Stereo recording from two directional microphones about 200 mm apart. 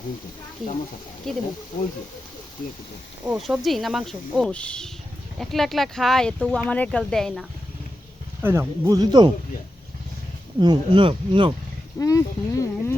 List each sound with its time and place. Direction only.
1.2 s speech: centre (ahead or behind)
3.2 s speech: centre (ahead or behind)
8.4 s speech: 10° right (ahead or behind)
10.6 s speech: 20° right (ahead or behind)
11.9 s speech: 15° left (ahead or behind)